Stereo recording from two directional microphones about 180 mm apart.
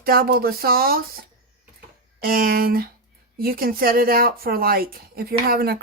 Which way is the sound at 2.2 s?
55° right (ahead or behind).